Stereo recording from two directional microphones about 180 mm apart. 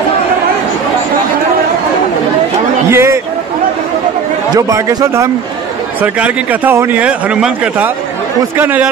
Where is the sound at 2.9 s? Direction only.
15° right (ahead or behind).